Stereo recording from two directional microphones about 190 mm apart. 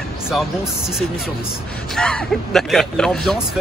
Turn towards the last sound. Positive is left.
turn(degrees=0)  # may be behind; listen again after turning